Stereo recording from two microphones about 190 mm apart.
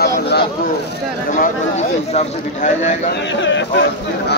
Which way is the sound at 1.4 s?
40° left (ahead or behind).